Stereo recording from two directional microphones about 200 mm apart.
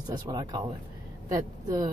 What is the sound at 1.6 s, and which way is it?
Speech, 20° right (ahead or behind).